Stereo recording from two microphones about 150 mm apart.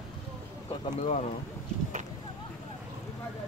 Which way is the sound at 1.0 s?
45° left (ahead or behind).